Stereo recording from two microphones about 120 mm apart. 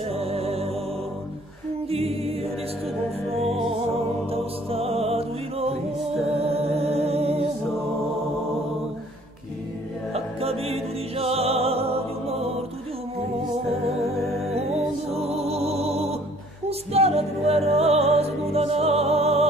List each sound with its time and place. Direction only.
0.1 s music: 55° right (ahead or behind)
1.9 s music: 55° right (ahead or behind)
10.1 s music: 55° right (ahead or behind)
14.1 s music: centre (ahead or behind)
15.1 s music: 60° right (ahead or behind)